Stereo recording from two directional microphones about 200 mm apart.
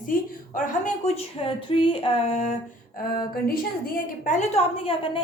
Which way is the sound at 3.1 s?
45° left (ahead or behind).